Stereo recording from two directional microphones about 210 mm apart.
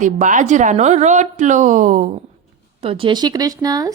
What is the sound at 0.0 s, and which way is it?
A woman's voice, 35° right (ahead or behind).